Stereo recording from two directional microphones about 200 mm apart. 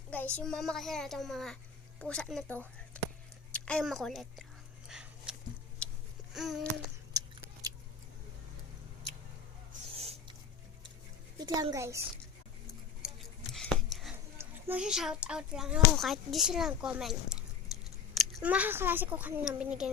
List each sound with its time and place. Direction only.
0.3 s a woman's voice: 5° left (ahead or behind)
4.9 s dog: 5° right (ahead or behind)
5.8 s a sound: 5° left (ahead or behind)
6.3 s speech: centre (ahead or behind)
7.1 s chewing: 15° right (ahead or behind)
10.0 s a sound: 30° right (ahead or behind)
11.3 s a child's voice: 20° right (ahead or behind)
13.0 s a sound: 5° right (ahead or behind)
14.3 s speech: 5° right (ahead or behind)